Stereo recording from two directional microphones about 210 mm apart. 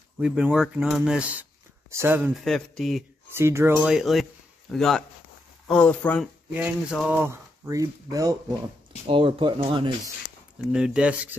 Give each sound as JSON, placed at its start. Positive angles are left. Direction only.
{"t": 0.2, "sound": "speech", "side_deg": -5}
{"t": 2.4, "sound": "speech", "side_deg": 0}
{"t": 3.3, "sound": "speech", "side_deg": -10}
{"t": 6.5, "sound": "speech", "side_deg": -5}
{"t": 10.7, "sound": "speech", "side_deg": -5}